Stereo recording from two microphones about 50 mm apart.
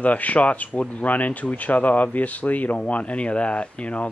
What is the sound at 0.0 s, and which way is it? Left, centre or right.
Speech, left.